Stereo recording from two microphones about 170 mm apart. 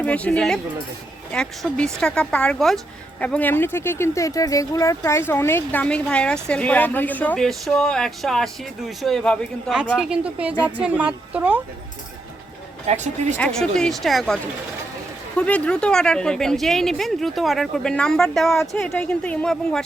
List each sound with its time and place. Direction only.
0.0 s a woman's voice: 10° left (ahead or behind); by 11.6 s 10° right (ahead or behind)
12.9 s speech: 45° right (ahead or behind)
13.3 s speech: 5° left (ahead or behind)
15.4 s speech: 5° left (ahead or behind)